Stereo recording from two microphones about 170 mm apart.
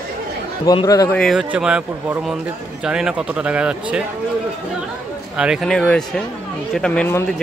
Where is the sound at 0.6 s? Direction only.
20° left (ahead or behind).